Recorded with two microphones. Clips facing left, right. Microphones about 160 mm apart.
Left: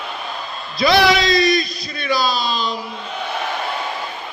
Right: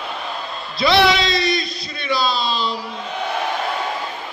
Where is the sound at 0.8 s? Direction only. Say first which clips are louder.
Left 1 dB; 25° right (ahead or behind).